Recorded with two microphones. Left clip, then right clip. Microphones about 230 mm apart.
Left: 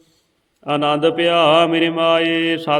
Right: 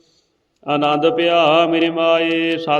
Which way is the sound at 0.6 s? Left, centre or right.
Left.